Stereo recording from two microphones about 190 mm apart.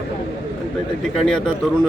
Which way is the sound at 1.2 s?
Centre (ahead or behind).